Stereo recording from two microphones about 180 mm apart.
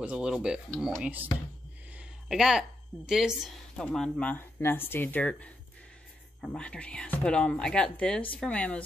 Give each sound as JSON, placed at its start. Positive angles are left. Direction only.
{"t": 0.0, "sound": "speech", "side_deg": -5}
{"t": 2.0, "sound": "a sound", "side_deg": -5}
{"t": 3.1, "sound": "speech", "side_deg": -5}